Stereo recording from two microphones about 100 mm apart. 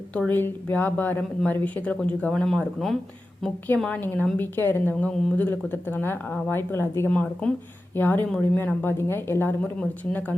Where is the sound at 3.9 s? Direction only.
20° left (ahead or behind).